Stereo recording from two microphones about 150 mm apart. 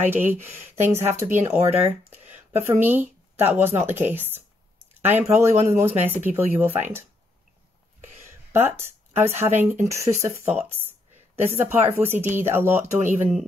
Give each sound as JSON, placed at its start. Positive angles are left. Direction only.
{"t": 0.0, "sound": "speech", "side_deg": -15}
{"t": 8.3, "sound": "a woman's voice", "side_deg": -15}